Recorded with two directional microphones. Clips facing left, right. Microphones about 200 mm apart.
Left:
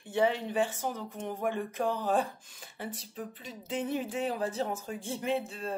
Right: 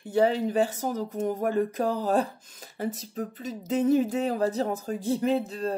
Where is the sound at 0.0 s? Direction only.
40° right (ahead or behind).